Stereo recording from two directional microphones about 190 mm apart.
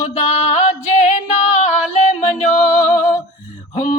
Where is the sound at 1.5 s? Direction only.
35° left (ahead or behind).